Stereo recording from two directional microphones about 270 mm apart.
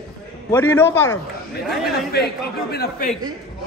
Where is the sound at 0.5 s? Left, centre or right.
Centre.